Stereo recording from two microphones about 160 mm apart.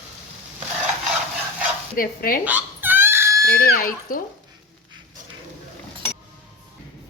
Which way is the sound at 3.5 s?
65° left (ahead or behind).